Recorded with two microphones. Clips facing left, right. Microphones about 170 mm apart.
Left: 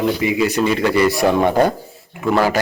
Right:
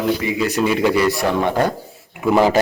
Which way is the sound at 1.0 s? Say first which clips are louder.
Left 3 dB; 10° left (ahead or behind).